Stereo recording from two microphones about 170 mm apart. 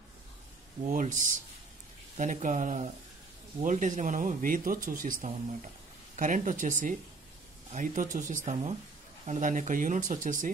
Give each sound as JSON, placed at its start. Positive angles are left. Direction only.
{"t": 0.8, "sound": "speech", "side_deg": -50}